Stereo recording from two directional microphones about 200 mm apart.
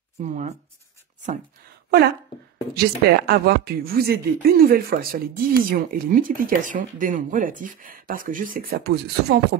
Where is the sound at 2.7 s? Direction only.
50° right (ahead or behind).